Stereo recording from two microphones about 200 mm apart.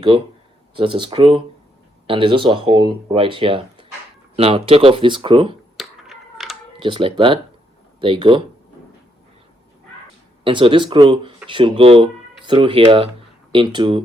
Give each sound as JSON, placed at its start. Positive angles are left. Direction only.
{"t": 0.8, "sound": "speech", "side_deg": -25}
{"t": 5.7, "sound": "a sound", "side_deg": 0}
{"t": 6.7, "sound": "speech", "side_deg": -25}
{"t": 10.4, "sound": "speech", "side_deg": -25}